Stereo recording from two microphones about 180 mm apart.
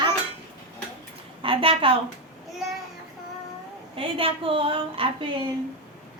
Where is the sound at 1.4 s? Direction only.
30° right (ahead or behind).